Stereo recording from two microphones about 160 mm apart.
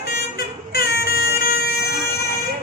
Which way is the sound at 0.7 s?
75° left (ahead or behind).